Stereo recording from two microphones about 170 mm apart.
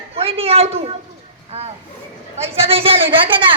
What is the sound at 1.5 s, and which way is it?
A woman's voice, 40° right (ahead or behind).